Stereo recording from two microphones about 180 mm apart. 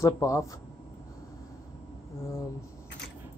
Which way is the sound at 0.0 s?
15° left (ahead or behind).